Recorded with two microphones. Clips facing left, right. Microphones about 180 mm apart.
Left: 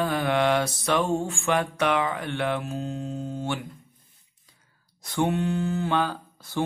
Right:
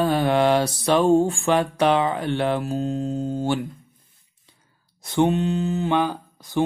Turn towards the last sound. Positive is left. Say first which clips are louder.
# right 5 dB
turn(degrees=-15)  # may be behind; listen again after turning